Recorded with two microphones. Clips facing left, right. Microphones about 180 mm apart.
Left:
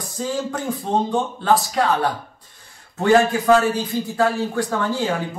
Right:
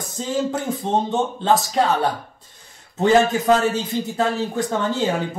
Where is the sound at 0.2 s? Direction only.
25° right (ahead or behind).